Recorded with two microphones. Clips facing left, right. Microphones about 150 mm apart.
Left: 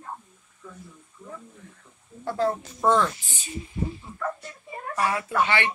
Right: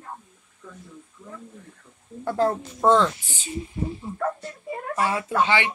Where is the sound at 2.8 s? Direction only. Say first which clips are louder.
Right 3 dB; 20° right (ahead or behind).